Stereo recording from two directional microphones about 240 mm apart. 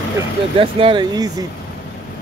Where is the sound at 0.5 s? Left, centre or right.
Right.